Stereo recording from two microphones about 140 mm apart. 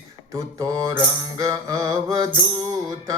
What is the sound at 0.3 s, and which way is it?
Music, 25° right (ahead or behind).